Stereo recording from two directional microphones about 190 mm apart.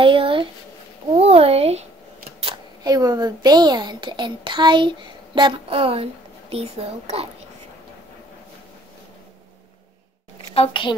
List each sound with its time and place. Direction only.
0.0 s a woman's voice: 25° right (ahead or behind)
10.5 s a woman's voice: 30° left (ahead or behind)